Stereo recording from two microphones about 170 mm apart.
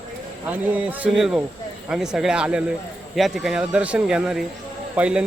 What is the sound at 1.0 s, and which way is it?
A man's voice, 5° right (ahead or behind).